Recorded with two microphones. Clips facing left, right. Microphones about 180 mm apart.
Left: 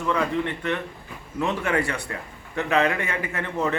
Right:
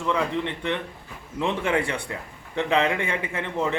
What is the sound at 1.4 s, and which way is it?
A man's voice, 25° right (ahead or behind).